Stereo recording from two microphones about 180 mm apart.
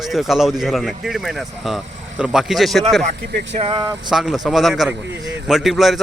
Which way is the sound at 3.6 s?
25° right (ahead or behind).